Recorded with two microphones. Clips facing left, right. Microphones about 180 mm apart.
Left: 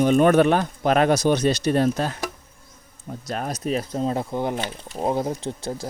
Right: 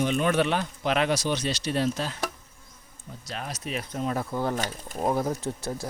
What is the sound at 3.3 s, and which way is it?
Speech, 45° left (ahead or behind).